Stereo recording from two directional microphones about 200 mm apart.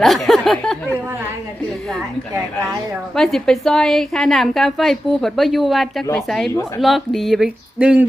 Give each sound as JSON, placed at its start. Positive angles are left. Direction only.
{"t": 0.0, "sound": "speech", "side_deg": 0}
{"t": 3.2, "sound": "a woman's voice", "side_deg": 0}